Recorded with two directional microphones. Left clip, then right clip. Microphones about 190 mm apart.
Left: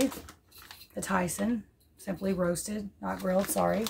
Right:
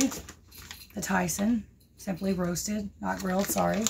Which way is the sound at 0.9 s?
20° left (ahead or behind).